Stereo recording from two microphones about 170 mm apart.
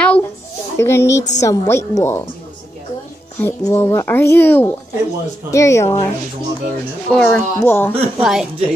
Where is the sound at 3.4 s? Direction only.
15° left (ahead or behind).